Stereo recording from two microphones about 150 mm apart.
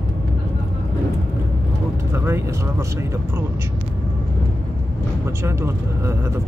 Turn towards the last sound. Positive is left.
turn(degrees=-15)  # may be behind; listen again after turning